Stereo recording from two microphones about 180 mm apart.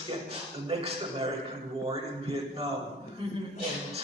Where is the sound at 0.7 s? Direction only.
35° right (ahead or behind).